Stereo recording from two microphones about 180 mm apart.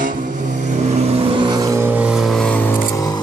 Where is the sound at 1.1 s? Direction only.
25° right (ahead or behind).